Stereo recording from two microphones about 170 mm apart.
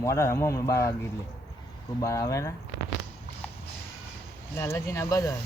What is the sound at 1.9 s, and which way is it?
Speech, 20° left (ahead or behind).